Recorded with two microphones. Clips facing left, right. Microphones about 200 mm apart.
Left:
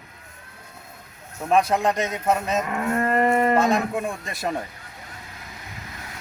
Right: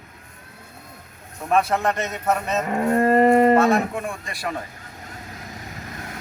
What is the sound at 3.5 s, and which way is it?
Speech, 15° left (ahead or behind).